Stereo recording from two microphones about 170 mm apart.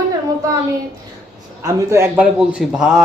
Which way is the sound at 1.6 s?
15° right (ahead or behind).